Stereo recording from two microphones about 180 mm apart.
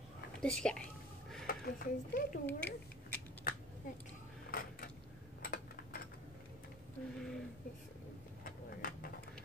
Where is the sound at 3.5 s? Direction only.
50° left (ahead or behind).